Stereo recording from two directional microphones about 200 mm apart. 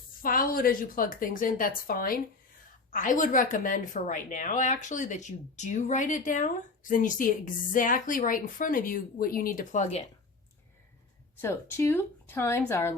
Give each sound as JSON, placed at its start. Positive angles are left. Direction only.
{"t": 0.2, "sound": "a woman's voice", "side_deg": 45}
{"t": 11.3, "sound": "a woman's voice", "side_deg": 10}